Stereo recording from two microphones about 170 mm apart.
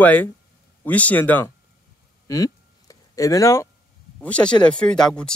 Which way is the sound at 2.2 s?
20° left (ahead or behind).